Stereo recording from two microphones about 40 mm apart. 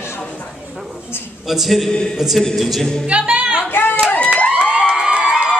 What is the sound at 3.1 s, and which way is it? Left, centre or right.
Music, right.